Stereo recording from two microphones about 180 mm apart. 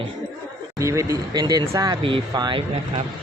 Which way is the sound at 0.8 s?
15° right (ahead or behind).